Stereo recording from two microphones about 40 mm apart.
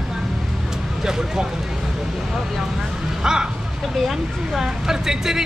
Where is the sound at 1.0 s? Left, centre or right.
Centre.